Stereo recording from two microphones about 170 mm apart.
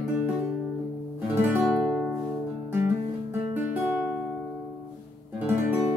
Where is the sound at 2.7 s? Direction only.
10° right (ahead or behind).